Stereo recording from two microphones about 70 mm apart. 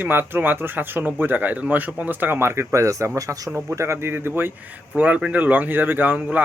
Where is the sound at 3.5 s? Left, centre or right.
Right.